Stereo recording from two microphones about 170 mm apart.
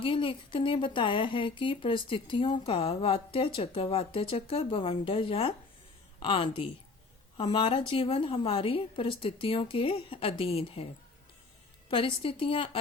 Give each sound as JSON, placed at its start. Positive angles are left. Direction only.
{"t": 0.0, "sound": "speech", "side_deg": 30}
{"t": 11.9, "sound": "speech", "side_deg": 30}